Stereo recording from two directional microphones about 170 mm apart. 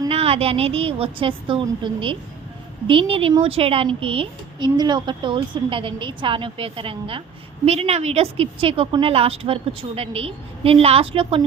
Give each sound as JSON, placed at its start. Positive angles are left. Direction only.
{"t": 0.1, "sound": "speech", "side_deg": -35}